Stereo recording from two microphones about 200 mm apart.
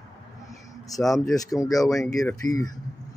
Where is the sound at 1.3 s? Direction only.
15° left (ahead or behind).